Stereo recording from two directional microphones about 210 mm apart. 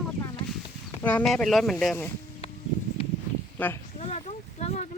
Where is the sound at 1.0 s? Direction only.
5° left (ahead or behind).